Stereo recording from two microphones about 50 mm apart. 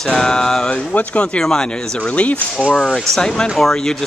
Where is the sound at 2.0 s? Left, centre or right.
Left.